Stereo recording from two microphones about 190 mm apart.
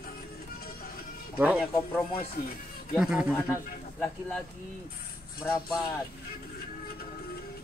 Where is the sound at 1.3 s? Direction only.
5° right (ahead or behind).